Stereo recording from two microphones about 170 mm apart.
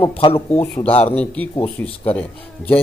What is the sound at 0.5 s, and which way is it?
Speech, 10° left (ahead or behind).